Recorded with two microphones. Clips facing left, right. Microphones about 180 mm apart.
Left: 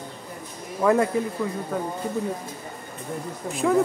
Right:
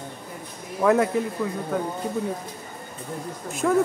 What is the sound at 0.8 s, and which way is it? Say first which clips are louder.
A man's voice: even; 5° right (ahead or behind).